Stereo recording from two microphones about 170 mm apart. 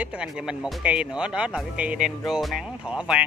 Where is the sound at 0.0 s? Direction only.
5° right (ahead or behind).